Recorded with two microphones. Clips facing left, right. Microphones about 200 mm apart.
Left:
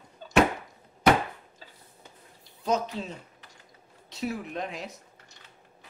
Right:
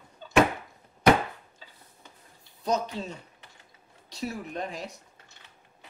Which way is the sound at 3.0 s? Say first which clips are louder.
Even; centre (ahead or behind).